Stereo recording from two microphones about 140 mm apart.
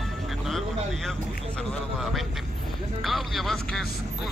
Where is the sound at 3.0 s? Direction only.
Centre (ahead or behind).